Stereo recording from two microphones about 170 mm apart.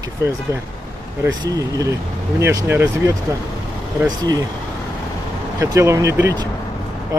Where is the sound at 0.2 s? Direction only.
15° right (ahead or behind).